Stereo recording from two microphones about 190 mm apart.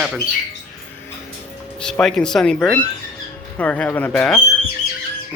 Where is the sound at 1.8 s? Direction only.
5° left (ahead or behind).